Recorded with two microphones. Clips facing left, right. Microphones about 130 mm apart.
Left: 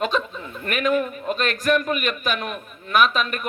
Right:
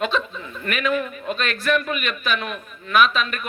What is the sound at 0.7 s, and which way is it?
A man's voice, 45° left (ahead or behind).